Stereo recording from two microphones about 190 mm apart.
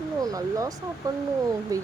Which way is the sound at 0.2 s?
20° right (ahead or behind).